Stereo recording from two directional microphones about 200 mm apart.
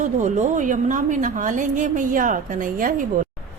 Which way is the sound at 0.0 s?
35° right (ahead or behind).